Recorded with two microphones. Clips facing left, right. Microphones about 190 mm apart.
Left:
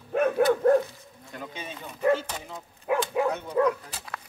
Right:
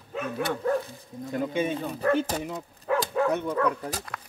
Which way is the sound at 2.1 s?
45° right (ahead or behind).